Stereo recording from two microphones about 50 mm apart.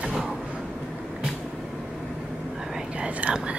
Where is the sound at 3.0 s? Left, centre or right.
Right.